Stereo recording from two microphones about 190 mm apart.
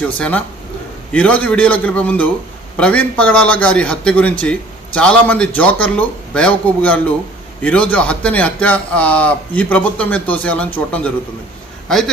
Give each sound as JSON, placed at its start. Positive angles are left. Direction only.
{"t": 0.2, "sound": "a man's voice", "side_deg": 10}